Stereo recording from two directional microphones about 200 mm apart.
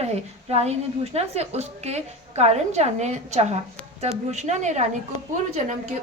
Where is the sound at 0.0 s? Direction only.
30° right (ahead or behind).